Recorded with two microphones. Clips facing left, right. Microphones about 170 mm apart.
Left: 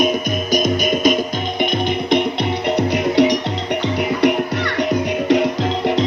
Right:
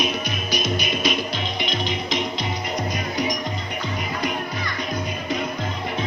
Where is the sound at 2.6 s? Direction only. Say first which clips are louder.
Left 10 dB; 70° left (ahead or behind).